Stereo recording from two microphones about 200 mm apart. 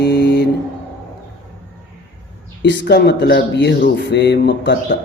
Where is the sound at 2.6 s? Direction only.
60° left (ahead or behind).